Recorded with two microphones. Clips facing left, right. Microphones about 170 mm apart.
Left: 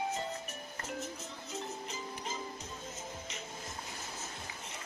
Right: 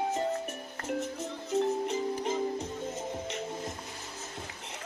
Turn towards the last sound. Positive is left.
turn(degrees=-60)  # may be behind; listen again after turning